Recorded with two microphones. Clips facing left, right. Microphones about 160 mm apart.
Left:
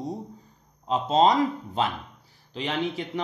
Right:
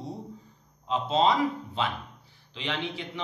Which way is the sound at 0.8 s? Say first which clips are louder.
Left 4 dB; 40° left (ahead or behind).